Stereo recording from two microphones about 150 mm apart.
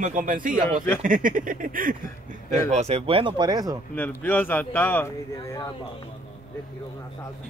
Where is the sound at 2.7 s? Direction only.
45° right (ahead or behind); by 3.8 s 25° right (ahead or behind).